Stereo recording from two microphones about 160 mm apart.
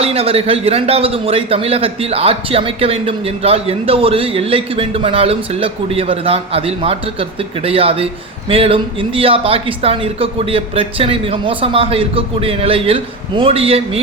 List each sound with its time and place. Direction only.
0.0 s speech: 40° right (ahead or behind)